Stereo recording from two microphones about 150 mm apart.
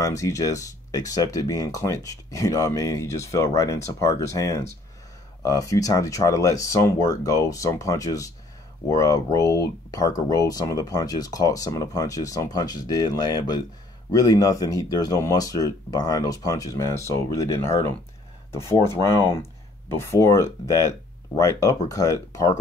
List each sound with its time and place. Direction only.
0.0 s speech: 20° left (ahead or behind)